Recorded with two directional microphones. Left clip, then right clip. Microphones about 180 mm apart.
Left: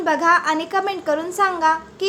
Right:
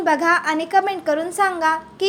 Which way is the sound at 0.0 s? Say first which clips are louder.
Left 1 dB; 10° right (ahead or behind).